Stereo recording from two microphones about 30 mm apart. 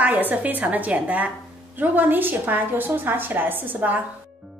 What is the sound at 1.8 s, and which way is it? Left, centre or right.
A woman's voice, right.